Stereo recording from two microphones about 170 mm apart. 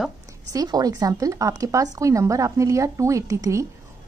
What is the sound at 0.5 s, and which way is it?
A woman's voice, 20° right (ahead or behind).